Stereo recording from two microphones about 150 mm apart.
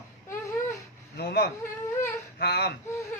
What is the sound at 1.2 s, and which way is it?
A man's voice, 90° left.